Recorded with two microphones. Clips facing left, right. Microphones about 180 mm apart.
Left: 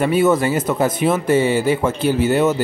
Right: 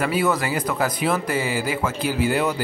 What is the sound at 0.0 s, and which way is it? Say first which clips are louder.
Speech: left 6 dB; 25° left (ahead or behind).